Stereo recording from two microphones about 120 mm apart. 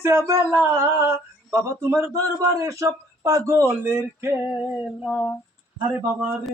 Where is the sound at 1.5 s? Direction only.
20° right (ahead or behind).